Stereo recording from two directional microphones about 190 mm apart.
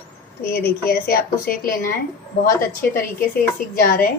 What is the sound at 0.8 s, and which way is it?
A woman's voice, 50° left (ahead or behind).